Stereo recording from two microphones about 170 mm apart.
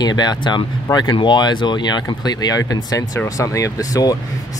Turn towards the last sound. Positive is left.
turn(degrees=20)  # may be behind; listen again after turning